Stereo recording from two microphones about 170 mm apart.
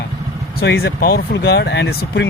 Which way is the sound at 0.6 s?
85° left.